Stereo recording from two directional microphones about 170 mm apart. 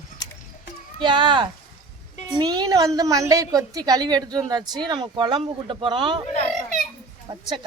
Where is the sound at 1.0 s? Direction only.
30° right (ahead or behind).